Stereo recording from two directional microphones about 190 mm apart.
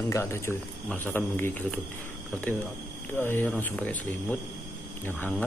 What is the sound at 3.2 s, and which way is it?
Speech, 10° left (ahead or behind).